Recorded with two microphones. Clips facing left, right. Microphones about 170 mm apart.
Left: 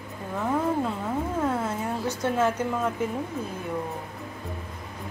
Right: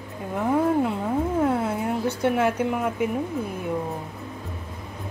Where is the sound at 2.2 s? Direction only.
15° right (ahead or behind).